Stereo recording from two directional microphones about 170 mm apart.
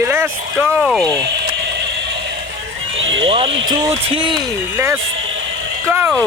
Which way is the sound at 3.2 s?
30° right (ahead or behind).